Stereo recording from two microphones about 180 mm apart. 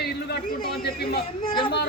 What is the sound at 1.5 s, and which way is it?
Speech, 30° left (ahead or behind).